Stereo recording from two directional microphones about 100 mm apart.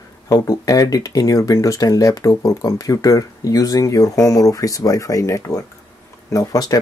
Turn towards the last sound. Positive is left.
turn(degrees=35)  # may be behind; listen again after turning